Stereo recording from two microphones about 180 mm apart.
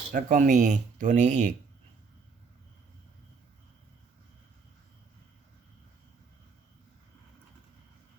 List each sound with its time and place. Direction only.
0.1 s speech: 45° right (ahead or behind)